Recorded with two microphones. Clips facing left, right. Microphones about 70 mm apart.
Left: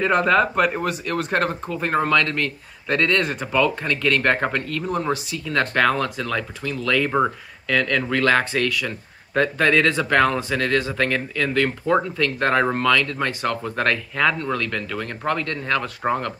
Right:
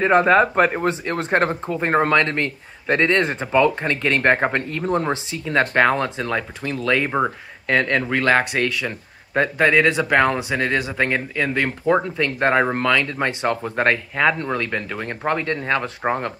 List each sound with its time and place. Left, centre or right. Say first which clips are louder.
0.0 s speech: right 3 dB; right